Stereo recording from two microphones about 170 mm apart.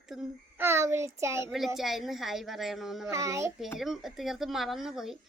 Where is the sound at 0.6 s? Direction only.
15° right (ahead or behind).